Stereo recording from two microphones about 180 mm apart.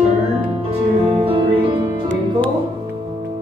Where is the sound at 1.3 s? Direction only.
30° right (ahead or behind).